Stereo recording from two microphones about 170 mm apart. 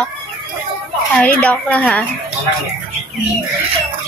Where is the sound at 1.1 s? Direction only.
10° left (ahead or behind).